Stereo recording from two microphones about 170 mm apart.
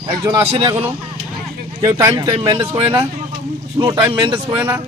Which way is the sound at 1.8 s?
20° right (ahead or behind).